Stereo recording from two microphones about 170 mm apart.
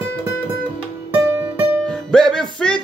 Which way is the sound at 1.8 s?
5° left (ahead or behind).